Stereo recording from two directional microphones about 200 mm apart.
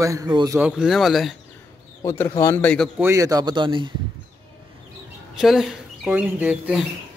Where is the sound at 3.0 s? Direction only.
15° right (ahead or behind).